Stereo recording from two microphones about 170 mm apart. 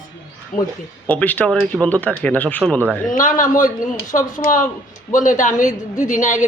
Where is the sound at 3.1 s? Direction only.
50° left (ahead or behind).